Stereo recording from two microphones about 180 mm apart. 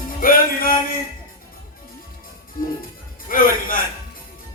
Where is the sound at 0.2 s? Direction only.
50° left (ahead or behind).